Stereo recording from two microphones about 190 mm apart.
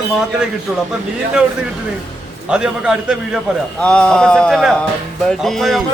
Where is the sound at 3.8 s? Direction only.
5° left (ahead or behind).